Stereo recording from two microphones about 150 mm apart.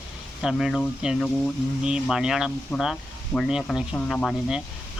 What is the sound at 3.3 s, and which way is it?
Speech, centre (ahead or behind).